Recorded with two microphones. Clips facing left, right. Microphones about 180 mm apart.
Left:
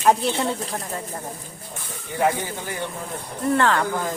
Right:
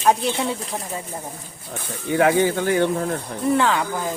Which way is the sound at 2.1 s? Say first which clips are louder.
Right 6 dB; 90° right.